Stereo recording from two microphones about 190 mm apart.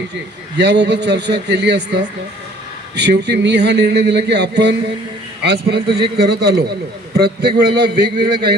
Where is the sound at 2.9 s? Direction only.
65° right (ahead or behind).